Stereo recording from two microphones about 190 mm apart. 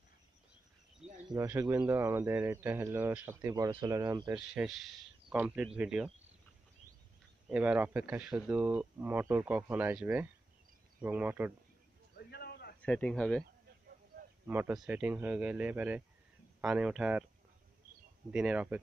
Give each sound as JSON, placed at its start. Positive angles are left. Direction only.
{"t": 1.3, "sound": "a man's voice", "side_deg": -15}
{"t": 4.6, "sound": "speech", "side_deg": -5}
{"t": 7.4, "sound": "a man's voice", "side_deg": -5}
{"t": 12.2, "sound": "a sound", "side_deg": 55}
{"t": 12.8, "sound": "speech", "side_deg": 5}
{"t": 14.5, "sound": "a man's voice", "side_deg": -5}
{"t": 18.3, "sound": "speech", "side_deg": -5}